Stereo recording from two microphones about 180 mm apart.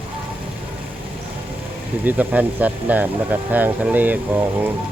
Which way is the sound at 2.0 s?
10° right (ahead or behind).